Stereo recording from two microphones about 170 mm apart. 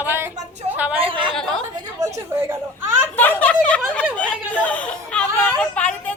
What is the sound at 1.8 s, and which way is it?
Speech, 20° right (ahead or behind).